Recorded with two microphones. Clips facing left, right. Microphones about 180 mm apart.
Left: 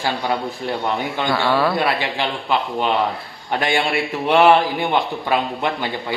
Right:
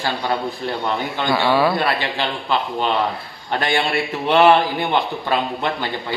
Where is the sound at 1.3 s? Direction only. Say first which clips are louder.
Right 2 dB; 5° right (ahead or behind).